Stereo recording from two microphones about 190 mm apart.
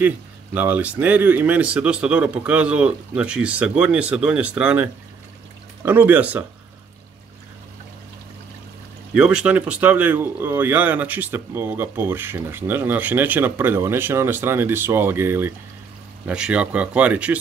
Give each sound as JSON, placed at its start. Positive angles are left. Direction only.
{"t": 0.6, "sound": "speech", "side_deg": -10}
{"t": 5.9, "sound": "speech", "side_deg": -10}
{"t": 9.1, "sound": "speech", "side_deg": -5}